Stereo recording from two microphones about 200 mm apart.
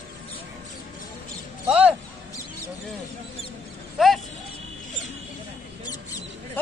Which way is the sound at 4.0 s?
Centre (ahead or behind).